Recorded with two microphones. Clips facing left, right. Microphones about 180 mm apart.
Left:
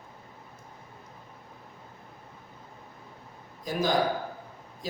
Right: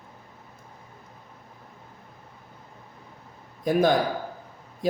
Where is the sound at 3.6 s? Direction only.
55° right (ahead or behind).